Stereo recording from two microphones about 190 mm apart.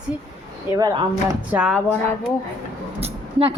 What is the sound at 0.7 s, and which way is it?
Speech, 20° right (ahead or behind).